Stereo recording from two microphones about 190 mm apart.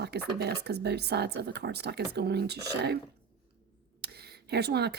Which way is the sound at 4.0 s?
55° right (ahead or behind).